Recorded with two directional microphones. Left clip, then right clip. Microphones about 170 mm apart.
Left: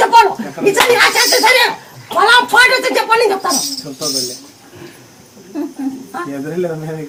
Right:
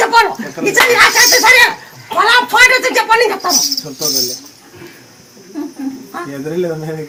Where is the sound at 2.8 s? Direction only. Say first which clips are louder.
Right 1 dB; 15° left (ahead or behind).